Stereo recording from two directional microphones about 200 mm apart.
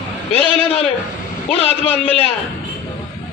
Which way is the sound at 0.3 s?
30° left (ahead or behind).